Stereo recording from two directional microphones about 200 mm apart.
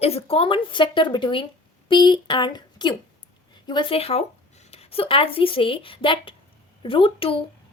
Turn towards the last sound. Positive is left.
turn(degrees=25)  # may be behind; listen again after turning